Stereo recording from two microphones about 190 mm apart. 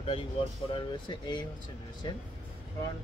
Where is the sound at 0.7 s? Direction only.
25° left (ahead or behind).